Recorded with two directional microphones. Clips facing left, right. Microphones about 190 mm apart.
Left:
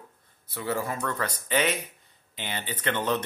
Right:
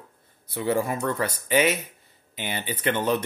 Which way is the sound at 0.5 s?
15° right (ahead or behind).